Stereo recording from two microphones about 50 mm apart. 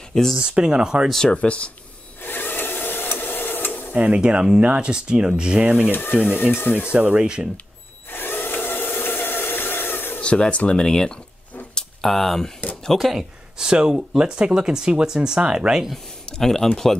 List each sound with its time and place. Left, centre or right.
0.1 s speech: centre
0.4 s speech: centre
1.3 s speech: left
2.2 s a sound: left
3.9 s speech: right
5.9 s speech: left
6.9 s speech: right
8.1 s wood: left
10.2 s speech: left
11.7 s a sound: centre
12.9 s speech: centre
13.7 s speech: centre
16.3 s speech: centre